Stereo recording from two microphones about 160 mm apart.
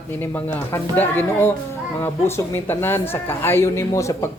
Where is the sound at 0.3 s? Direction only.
10° left (ahead or behind).